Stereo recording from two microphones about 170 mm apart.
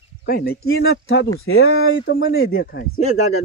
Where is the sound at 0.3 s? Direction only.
60° left (ahead or behind); by 1.3 s 90° left.